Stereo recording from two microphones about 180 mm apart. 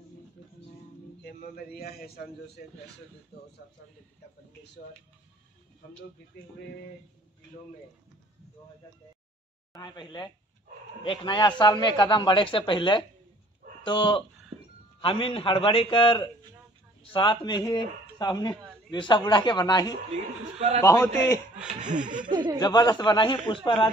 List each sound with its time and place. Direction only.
1.2 s a man's voice: 55° left (ahead or behind)
9.8 s speech: 25° left (ahead or behind)
20.5 s a man's voice: 40° right (ahead or behind)
20.8 s a man's voice: 15° left (ahead or behind)
21.7 s speech: 45° right (ahead or behind)
22.3 s speech: 25° right (ahead or behind)
22.6 s speech: 20° left (ahead or behind)